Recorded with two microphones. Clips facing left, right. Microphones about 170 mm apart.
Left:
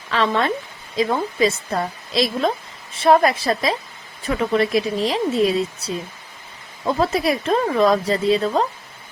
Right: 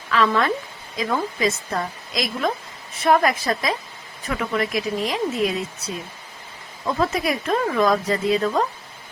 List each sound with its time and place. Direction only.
0.1 s speech: 30° left (ahead or behind)